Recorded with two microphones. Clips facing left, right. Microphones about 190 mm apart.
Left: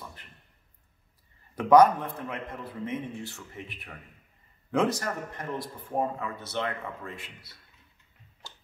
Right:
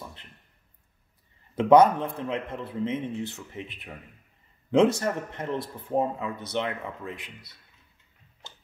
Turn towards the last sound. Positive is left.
turn(degrees=-20)  # may be behind; listen again after turning